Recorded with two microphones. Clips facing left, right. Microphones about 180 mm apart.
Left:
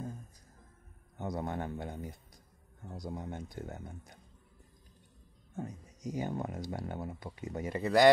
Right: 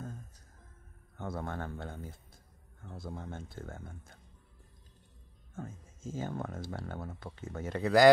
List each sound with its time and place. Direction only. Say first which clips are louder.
1.1 s a man's voice: left 2 dB; 15° left (ahead or behind)
5.6 s speech: left 3 dB; 15° left (ahead or behind)